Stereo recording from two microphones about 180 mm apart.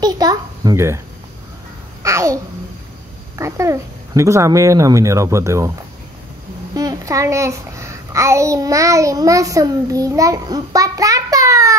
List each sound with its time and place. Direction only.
0.0 s a child's voice: 20° right (ahead or behind)
2.0 s speech: 15° right (ahead or behind)
6.7 s a child's voice: 20° right (ahead or behind)